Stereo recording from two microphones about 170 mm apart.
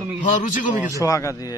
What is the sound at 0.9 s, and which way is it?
Speech, 20° left (ahead or behind).